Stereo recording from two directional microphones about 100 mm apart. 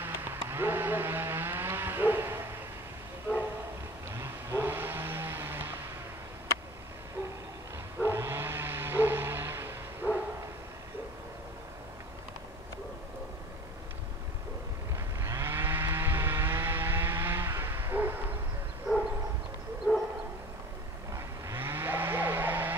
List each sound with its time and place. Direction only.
0.0 s vehicle: 20° right (ahead or behind)
4.1 s vehicle: 25° right (ahead or behind)
8.0 s a sound: 25° right (ahead or behind)
15.2 s vehicle: 25° right (ahead or behind)
18.9 s bow-wow: 5° right (ahead or behind)
21.5 s a sound: 25° right (ahead or behind)